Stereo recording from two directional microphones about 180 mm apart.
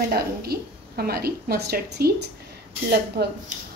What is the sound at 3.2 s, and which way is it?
Speech, 60° right (ahead or behind).